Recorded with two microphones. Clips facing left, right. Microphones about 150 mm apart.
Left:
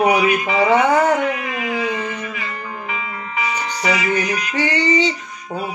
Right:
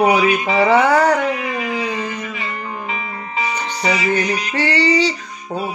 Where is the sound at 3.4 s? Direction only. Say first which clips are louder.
Right 1 dB; 25° right (ahead or behind).